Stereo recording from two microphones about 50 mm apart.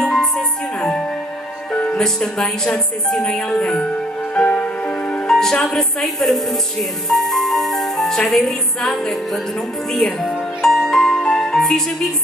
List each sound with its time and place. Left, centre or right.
0.0 s music: centre
1.7 s speech: left
4.4 s music: left
5.2 s a woman's voice: centre
7.1 s music: centre